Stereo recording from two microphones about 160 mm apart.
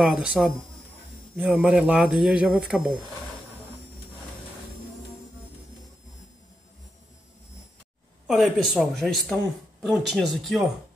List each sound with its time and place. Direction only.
0.0 s speech: 5° right (ahead or behind)
8.3 s speech: centre (ahead or behind)